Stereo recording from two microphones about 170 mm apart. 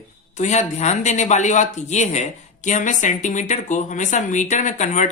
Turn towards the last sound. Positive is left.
turn(degrees=45)  # may be behind; listen again after turning